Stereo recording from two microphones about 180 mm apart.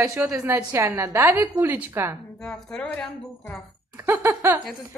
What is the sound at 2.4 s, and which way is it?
A woman's voice, 5° left (ahead or behind).